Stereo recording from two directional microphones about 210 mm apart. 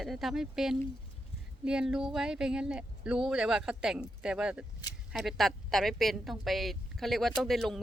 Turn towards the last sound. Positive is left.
turn(degrees=0)  # may be behind; listen again after turning